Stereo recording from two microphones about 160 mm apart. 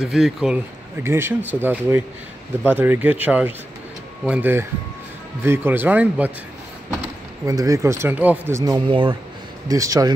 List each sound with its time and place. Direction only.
0.0 s speech: 5° right (ahead or behind)
1.0 s speech: 15° right (ahead or behind)
7.4 s speech: 20° right (ahead or behind)